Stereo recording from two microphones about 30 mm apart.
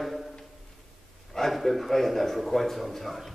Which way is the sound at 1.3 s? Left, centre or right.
Centre.